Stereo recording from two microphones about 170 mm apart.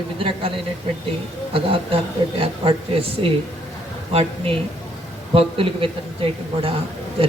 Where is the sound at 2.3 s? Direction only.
30° right (ahead or behind).